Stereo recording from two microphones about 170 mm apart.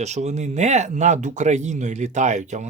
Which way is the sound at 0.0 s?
40° right (ahead or behind).